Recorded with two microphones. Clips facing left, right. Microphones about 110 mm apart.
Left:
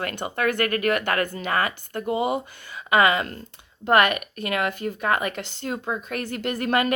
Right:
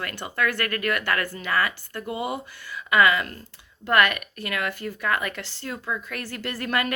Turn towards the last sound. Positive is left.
turn(degrees=25)  # may be behind; listen again after turning